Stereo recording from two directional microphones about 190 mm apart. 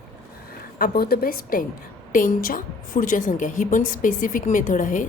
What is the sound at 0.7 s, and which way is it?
Speech, 50° left (ahead or behind).